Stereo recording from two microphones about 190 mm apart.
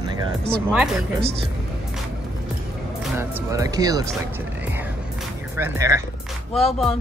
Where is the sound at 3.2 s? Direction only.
15° right (ahead or behind).